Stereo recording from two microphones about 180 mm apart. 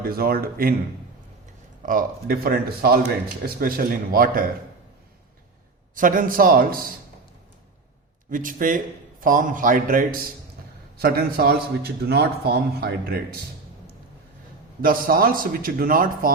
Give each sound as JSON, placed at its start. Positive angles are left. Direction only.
{"t": 0.0, "sound": "a man's voice", "side_deg": -55}
{"t": 1.8, "sound": "a man's voice", "side_deg": -50}
{"t": 5.9, "sound": "a man's voice", "side_deg": -50}
{"t": 8.3, "sound": "a man's voice", "side_deg": -50}
{"t": 14.8, "sound": "a man's voice", "side_deg": -50}